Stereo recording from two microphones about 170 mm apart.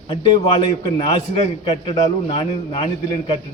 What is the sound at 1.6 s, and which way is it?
A man's voice, 35° left (ahead or behind).